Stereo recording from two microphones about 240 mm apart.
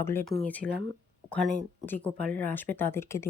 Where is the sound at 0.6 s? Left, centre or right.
Right.